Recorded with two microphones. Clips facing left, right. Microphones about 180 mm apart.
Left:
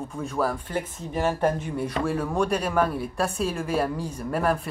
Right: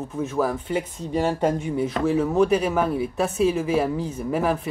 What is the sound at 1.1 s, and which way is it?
Speech, 20° right (ahead or behind).